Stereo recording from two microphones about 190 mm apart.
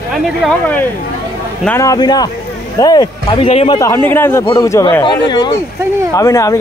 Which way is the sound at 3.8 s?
10° left (ahead or behind).